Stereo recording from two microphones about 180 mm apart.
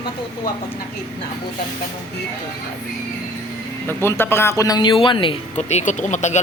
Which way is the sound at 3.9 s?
15° left (ahead or behind).